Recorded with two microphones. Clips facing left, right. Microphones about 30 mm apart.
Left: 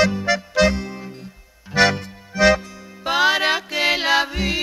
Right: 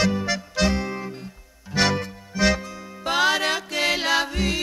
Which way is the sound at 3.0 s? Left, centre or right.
Centre.